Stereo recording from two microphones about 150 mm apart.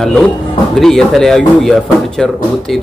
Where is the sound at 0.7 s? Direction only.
Centre (ahead or behind).